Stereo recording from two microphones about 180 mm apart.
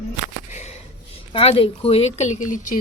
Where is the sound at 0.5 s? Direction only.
40° left (ahead or behind).